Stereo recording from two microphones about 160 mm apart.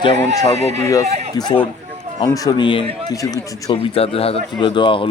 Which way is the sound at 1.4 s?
25° left (ahead or behind).